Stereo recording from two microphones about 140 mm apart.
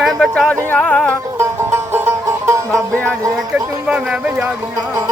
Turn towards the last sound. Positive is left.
turn(degrees=-10)  # may be behind; listen again after turning